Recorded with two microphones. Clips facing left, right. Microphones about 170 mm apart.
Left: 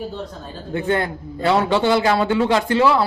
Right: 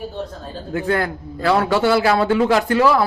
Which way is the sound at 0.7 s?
25° left (ahead or behind).